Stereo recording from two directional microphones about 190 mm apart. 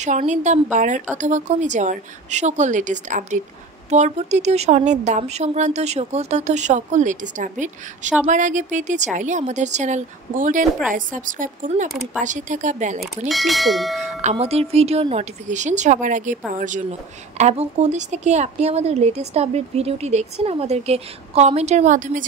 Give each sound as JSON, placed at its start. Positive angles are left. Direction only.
{"t": 0.0, "sound": "a woman's voice", "side_deg": -40}
{"t": 13.3, "sound": "speech", "side_deg": 0}
{"t": 14.0, "sound": "speech", "side_deg": -35}